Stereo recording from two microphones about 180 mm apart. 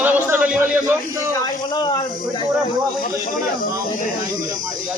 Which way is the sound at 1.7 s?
25° left (ahead or behind).